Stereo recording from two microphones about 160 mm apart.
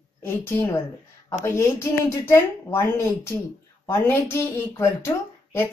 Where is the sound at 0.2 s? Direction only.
15° left (ahead or behind).